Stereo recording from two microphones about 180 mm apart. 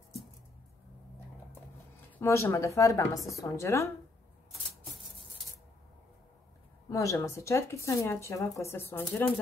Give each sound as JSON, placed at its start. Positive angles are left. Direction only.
{"t": 2.1, "sound": "speech", "side_deg": 15}
{"t": 6.9, "sound": "speech", "side_deg": 15}